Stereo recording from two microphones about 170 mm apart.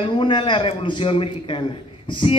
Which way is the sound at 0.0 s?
30° left (ahead or behind).